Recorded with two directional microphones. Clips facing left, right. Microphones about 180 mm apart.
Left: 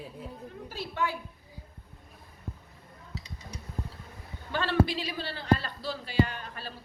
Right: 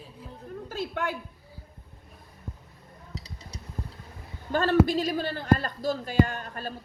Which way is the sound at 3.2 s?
35° right (ahead or behind).